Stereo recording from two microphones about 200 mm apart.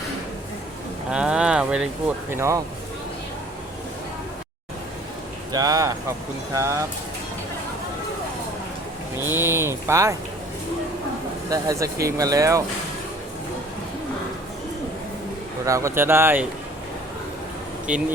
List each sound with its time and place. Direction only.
1.1 s speech: 5° right (ahead or behind)
5.5 s speech: 20° right (ahead or behind)
9.3 s speech: 10° right (ahead or behind)
11.4 s speech: 15° right (ahead or behind)
15.6 s speech: 15° right (ahead or behind)
17.9 s speech: 5° right (ahead or behind)